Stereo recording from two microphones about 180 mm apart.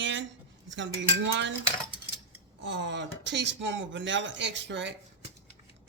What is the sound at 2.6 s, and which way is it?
Speech, 80° right.